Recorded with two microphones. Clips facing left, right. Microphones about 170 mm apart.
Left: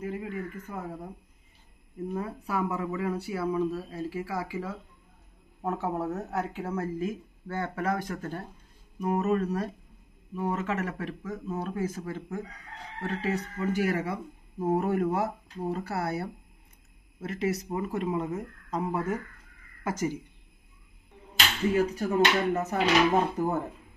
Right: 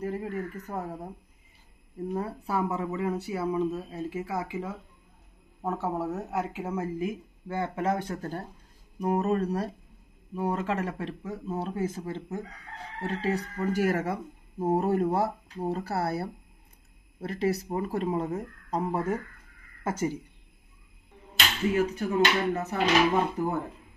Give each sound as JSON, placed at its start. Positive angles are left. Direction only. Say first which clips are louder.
{"t": 0.0, "sound": "speech", "louder": "right 2 dB", "side_deg": -40}
{"t": 2.1, "sound": "speech", "louder": "right 1 dB", "side_deg": -30}
{"t": 5.6, "sound": "speech", "louder": "even", "side_deg": 0}
{"t": 14.6, "sound": "speech", "louder": "right 1 dB", "side_deg": -30}
{"t": 21.7, "sound": "speech", "louder": "left 1 dB", "side_deg": 40}